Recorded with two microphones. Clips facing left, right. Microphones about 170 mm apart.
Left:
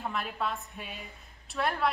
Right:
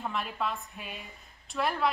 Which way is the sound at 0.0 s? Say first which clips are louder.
Even; centre (ahead or behind).